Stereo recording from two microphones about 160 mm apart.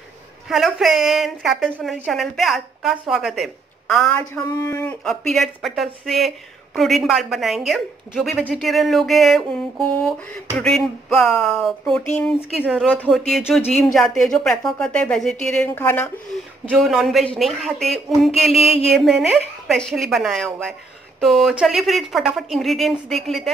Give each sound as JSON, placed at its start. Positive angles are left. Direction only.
{"t": 0.5, "sound": "speech", "side_deg": 0}
{"t": 4.3, "sound": "speech", "side_deg": 20}
{"t": 4.8, "sound": "speech", "side_deg": 5}
{"t": 12.5, "sound": "speech", "side_deg": -10}
{"t": 12.8, "sound": "speech", "side_deg": 10}
{"t": 16.6, "sound": "speech", "side_deg": 0}